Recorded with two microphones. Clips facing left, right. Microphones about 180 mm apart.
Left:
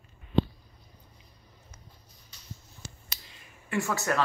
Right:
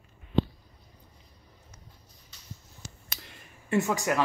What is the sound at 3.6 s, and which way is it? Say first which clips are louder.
Speech: right 3 dB; 20° right (ahead or behind).